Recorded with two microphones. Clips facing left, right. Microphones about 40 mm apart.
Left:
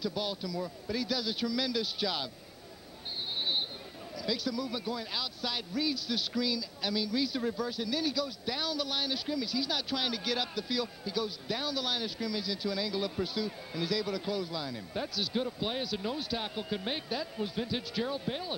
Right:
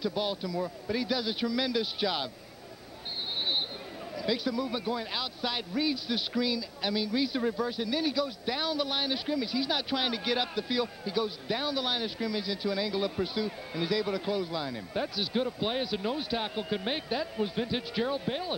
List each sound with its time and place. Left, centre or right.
0.0 s a man's voice: centre
4.2 s a man's voice: centre